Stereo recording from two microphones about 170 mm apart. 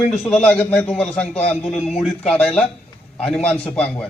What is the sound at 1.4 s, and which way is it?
Speech, 40° left (ahead or behind).